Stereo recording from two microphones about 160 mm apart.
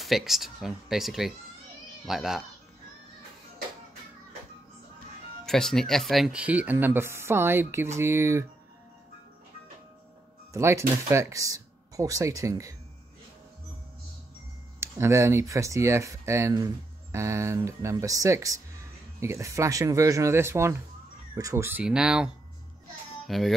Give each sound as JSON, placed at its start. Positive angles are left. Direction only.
{"t": 0.0, "sound": "speech", "side_deg": 0}
{"t": 5.4, "sound": "speech", "side_deg": 0}
{"t": 10.5, "sound": "speech", "side_deg": -15}
{"t": 14.8, "sound": "speech", "side_deg": -15}